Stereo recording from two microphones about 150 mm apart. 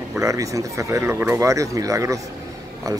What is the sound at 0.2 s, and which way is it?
Speech, 20° right (ahead or behind).